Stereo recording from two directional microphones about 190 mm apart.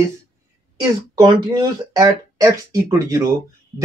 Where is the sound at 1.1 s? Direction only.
25° right (ahead or behind).